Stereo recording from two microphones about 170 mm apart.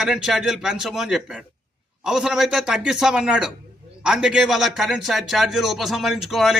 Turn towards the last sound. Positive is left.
turn(degrees=0)  # may be behind; listen again after turning